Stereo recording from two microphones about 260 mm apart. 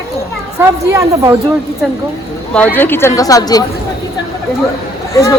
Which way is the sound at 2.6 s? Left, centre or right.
Centre.